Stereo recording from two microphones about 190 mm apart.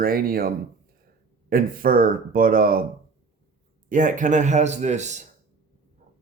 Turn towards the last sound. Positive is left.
turn(degrees=-40)  # may be behind; listen again after turning